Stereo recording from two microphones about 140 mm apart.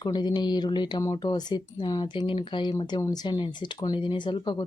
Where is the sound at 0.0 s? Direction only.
30° left (ahead or behind).